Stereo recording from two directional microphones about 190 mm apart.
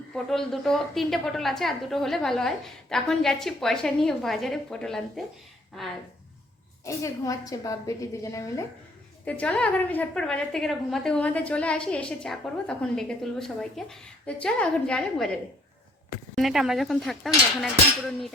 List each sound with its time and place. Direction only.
0.3 s a woman's voice: centre (ahead or behind)
6.8 s a woman's voice: 15° left (ahead or behind)
16.3 s a woman's voice: centre (ahead or behind)